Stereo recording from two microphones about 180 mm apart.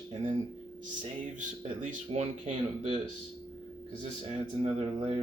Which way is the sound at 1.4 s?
40° right (ahead or behind).